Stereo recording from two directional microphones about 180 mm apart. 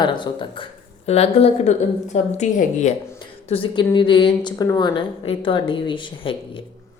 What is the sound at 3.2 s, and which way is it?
A woman's voice, 30° left (ahead or behind).